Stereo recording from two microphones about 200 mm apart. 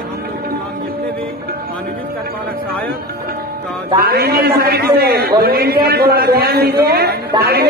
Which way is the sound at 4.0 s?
50° right (ahead or behind).